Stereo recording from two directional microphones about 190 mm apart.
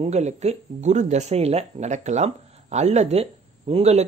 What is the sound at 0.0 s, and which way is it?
Speech, 35° right (ahead or behind).